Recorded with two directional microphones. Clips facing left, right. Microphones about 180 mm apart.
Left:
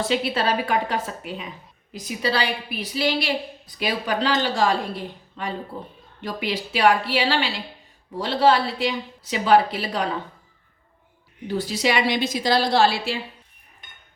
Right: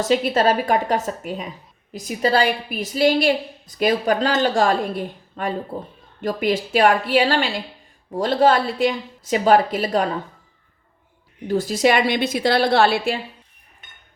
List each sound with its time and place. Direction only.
0.0 s a woman's voice: 45° right (ahead or behind)
11.4 s a woman's voice: 45° right (ahead or behind)